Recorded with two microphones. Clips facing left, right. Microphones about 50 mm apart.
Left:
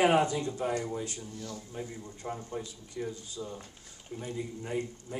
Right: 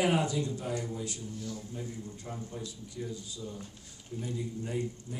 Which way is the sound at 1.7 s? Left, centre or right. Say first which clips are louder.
Even; left.